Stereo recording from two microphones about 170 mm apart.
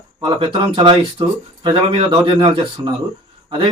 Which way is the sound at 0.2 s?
30° right (ahead or behind).